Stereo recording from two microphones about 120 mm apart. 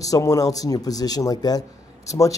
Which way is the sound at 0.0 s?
30° left (ahead or behind).